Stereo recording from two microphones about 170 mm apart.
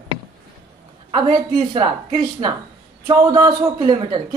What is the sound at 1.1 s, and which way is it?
Speech, 30° right (ahead or behind).